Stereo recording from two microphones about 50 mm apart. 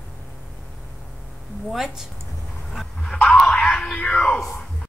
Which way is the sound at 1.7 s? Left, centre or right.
Centre.